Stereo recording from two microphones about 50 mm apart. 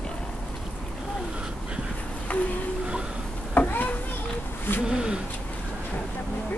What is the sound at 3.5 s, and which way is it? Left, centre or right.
Children playing, left.